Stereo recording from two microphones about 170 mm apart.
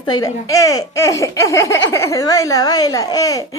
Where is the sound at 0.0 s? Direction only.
25° left (ahead or behind).